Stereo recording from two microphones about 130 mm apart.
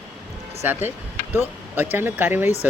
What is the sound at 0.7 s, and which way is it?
Speech, 15° right (ahead or behind).